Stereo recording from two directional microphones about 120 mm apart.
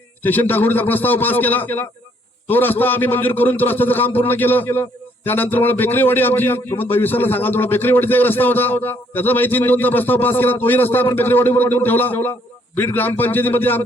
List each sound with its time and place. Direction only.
0.2 s a man's voice: 15° left (ahead or behind)